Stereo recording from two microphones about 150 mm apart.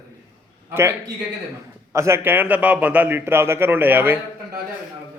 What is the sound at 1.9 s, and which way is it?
A man's voice, 20° right (ahead or behind).